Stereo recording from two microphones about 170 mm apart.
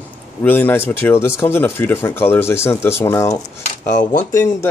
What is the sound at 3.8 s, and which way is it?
Speech, 50° left (ahead or behind).